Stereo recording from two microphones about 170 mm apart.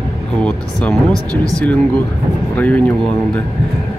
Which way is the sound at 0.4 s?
5° left (ahead or behind).